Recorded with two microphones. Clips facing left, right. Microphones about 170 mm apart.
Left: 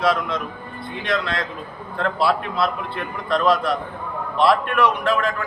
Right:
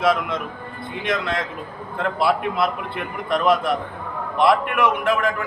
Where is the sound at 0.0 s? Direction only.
20° right (ahead or behind).